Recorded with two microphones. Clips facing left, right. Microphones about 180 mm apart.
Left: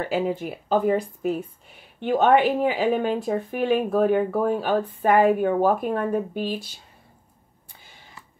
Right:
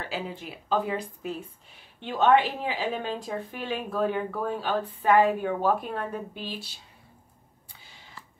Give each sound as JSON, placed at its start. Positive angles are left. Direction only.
{"t": 0.0, "sound": "a woman's voice", "side_deg": 50}